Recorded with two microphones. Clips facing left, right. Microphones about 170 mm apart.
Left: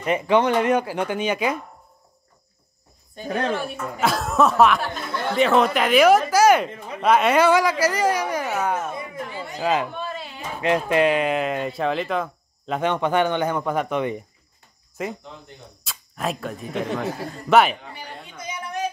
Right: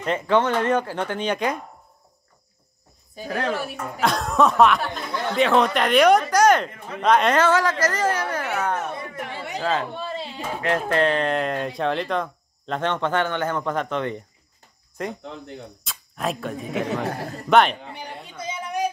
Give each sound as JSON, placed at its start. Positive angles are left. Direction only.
{"t": 0.0, "sound": "speech", "side_deg": 10}
{"t": 3.4, "sound": "speech", "side_deg": -5}
{"t": 9.1, "sound": "a sound", "side_deg": -75}
{"t": 9.6, "sound": "speech", "side_deg": 10}
{"t": 9.9, "sound": "a sound", "side_deg": -30}
{"t": 10.6, "sound": "speech", "side_deg": 15}